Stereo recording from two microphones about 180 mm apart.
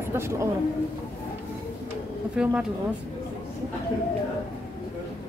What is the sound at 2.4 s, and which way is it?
Speech, 5° right (ahead or behind).